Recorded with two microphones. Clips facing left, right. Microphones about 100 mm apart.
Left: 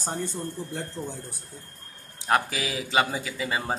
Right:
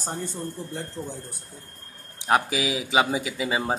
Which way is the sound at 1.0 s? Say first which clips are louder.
Even; 15° left (ahead or behind).